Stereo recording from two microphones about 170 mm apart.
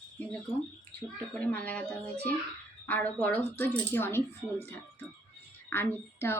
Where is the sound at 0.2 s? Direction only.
10° left (ahead or behind).